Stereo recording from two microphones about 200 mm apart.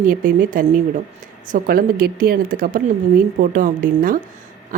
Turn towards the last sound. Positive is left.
turn(degrees=-45)  # may be behind; listen again after turning